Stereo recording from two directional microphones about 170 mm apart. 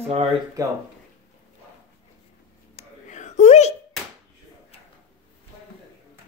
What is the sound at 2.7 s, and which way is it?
Whispering, 45° left (ahead or behind).